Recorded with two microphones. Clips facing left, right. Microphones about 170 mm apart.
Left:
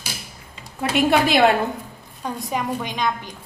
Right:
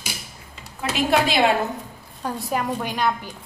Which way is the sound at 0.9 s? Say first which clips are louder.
Left 3 dB; 55° left (ahead or behind).